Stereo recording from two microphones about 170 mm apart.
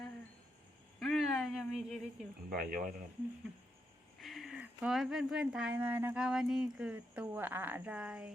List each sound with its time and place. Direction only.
0.9 s a sound: centre (ahead or behind)
2.5 s speech: 55° right (ahead or behind)
4.2 s speech: centre (ahead or behind)